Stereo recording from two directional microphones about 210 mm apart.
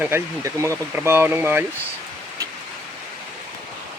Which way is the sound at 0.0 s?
15° right (ahead or behind).